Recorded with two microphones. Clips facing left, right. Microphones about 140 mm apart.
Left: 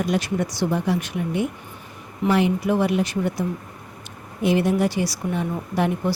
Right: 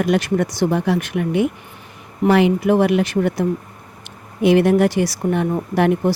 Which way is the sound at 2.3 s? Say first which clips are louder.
Right 5 dB; 85° right.